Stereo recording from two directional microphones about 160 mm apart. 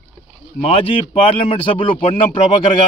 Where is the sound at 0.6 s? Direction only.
35° left (ahead or behind).